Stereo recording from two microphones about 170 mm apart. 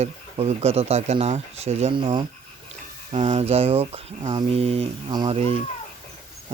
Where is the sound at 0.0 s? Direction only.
40° right (ahead or behind).